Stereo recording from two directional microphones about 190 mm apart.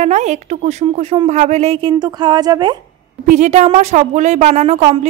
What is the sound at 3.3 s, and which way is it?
A woman's voice, 40° right (ahead or behind).